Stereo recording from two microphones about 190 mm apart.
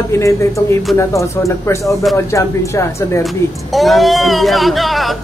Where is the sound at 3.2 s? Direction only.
Centre (ahead or behind).